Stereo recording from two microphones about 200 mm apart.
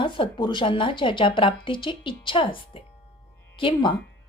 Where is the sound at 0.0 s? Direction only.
25° left (ahead or behind).